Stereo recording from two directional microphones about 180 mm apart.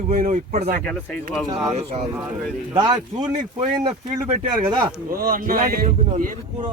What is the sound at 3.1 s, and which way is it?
Speech, 35° right (ahead or behind).